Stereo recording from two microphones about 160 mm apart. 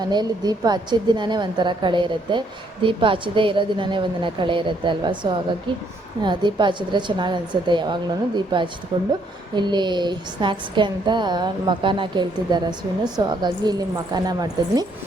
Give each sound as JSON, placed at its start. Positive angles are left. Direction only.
{"t": 0.0, "sound": "a woman's voice", "side_deg": -25}